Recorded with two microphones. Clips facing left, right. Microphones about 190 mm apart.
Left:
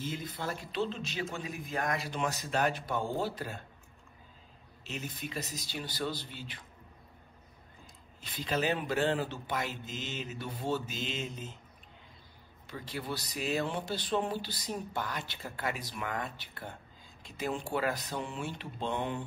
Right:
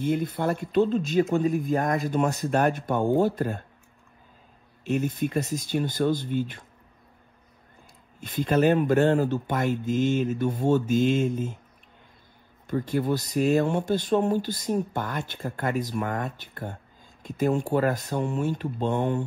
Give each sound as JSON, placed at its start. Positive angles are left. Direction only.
{"t": 0.0, "sound": "speech", "side_deg": -60}
{"t": 4.8, "sound": "speech", "side_deg": -50}
{"t": 8.2, "sound": "speech", "side_deg": -50}
{"t": 12.6, "sound": "speech", "side_deg": -50}